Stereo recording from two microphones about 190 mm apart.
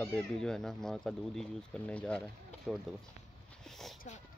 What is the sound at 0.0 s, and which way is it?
Speech, 5° left (ahead or behind).